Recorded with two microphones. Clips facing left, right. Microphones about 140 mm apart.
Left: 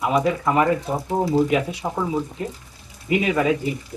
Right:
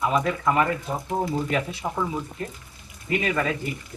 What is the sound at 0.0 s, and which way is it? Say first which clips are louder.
Speech: left 3 dB; 10° left (ahead or behind).